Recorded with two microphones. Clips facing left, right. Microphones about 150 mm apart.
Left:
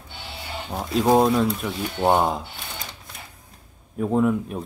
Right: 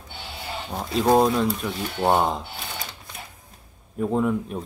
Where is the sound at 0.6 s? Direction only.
Centre (ahead or behind).